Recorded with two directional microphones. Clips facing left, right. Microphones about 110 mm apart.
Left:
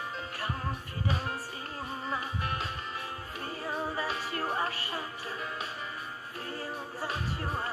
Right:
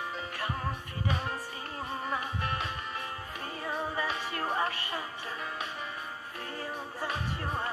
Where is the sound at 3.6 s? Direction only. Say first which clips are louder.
Right 1 dB; 30° left (ahead or behind).